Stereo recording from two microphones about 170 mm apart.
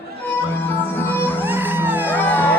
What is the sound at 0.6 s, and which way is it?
Music, 15° left (ahead or behind).